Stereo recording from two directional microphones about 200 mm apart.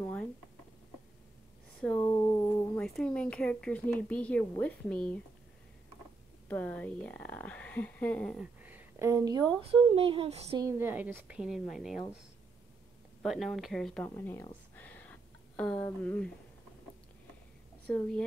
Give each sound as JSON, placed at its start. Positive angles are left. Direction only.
{"t": 0.0, "sound": "a sound", "side_deg": 5}
{"t": 2.0, "sound": "a sound", "side_deg": 20}
{"t": 2.8, "sound": "speech", "side_deg": 5}
{"t": 6.5, "sound": "speech", "side_deg": 5}
{"t": 8.6, "sound": "a sound", "side_deg": -10}
{"t": 9.6, "sound": "speech", "side_deg": -30}
{"t": 10.6, "sound": "a woman's voice", "side_deg": -10}
{"t": 13.2, "sound": "speech", "side_deg": 0}
{"t": 17.8, "sound": "a woman's voice", "side_deg": 5}